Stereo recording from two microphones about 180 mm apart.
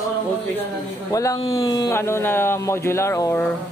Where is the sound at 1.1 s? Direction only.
20° left (ahead or behind).